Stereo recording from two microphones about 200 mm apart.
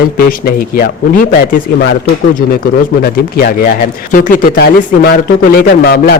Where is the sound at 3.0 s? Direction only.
50° left (ahead or behind).